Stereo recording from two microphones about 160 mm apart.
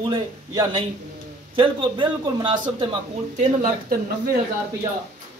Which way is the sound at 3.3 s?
50° right (ahead or behind).